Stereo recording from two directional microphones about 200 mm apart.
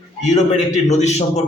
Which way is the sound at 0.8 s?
35° left (ahead or behind).